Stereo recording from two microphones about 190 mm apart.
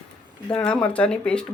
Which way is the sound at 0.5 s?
5° left (ahead or behind).